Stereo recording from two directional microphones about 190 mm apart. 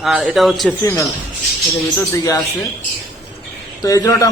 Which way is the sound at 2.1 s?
20° left (ahead or behind).